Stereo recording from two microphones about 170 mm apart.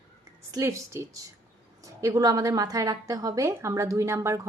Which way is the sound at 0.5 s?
15° right (ahead or behind).